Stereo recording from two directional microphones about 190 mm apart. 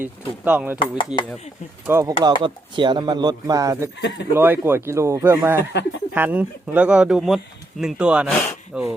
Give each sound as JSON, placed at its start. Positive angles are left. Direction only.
{"t": 0.0, "sound": "speech", "side_deg": -5}
{"t": 0.8, "sound": "speech", "side_deg": 25}
{"t": 1.9, "sound": "speech", "side_deg": -15}
{"t": 5.7, "sound": "speech", "side_deg": 65}
{"t": 6.1, "sound": "speech", "side_deg": -10}